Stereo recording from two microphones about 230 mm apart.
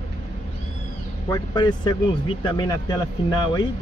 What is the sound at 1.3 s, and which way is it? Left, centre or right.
Speech, centre.